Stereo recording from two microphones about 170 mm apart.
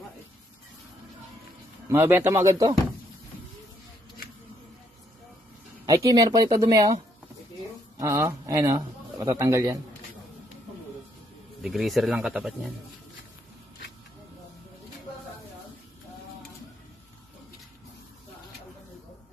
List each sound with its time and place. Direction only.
1.9 s speech: 15° right (ahead or behind)
5.9 s a man's voice: 20° right (ahead or behind)
8.0 s a man's voice: 20° right (ahead or behind)
11.6 s speech: centre (ahead or behind)